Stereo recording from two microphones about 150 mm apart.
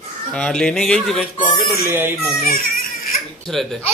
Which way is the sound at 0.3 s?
5° left (ahead or behind).